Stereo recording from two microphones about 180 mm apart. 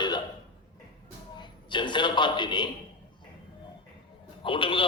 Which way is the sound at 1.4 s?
25° left (ahead or behind).